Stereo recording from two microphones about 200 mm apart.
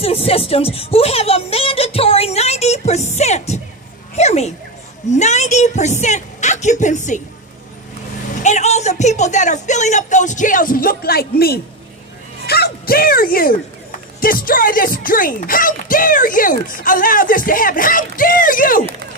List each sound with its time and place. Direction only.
0.0 s a sound: 30° left (ahead or behind)
4.1 s speech: 35° left (ahead or behind)
8.4 s speech: 35° left (ahead or behind)